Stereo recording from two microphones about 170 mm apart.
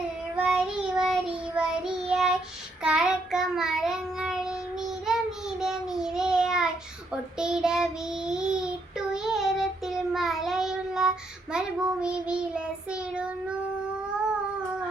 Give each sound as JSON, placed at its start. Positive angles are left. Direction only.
{"t": 0.3, "sound": "child singing", "side_deg": -5}